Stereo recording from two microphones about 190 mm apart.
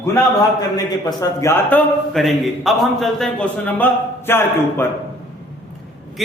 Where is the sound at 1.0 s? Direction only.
15° left (ahead or behind).